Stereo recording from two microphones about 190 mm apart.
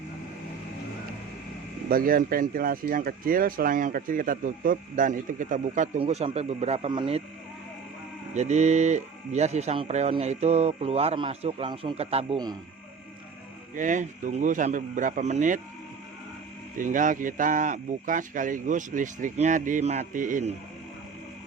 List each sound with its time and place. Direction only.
1.9 s speech: 50° right (ahead or behind); by 7.2 s 25° right (ahead or behind)
8.3 s speech: 35° right (ahead or behind)
13.7 s speech: 40° right (ahead or behind)
16.7 s speech: 45° right (ahead or behind)